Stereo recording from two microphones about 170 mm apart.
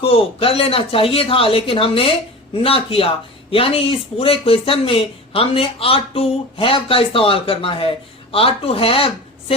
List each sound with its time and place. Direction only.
0.0 s speech: 35° left (ahead or behind)